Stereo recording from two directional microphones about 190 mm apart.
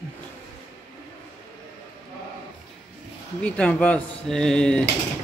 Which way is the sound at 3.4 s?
5° left (ahead or behind).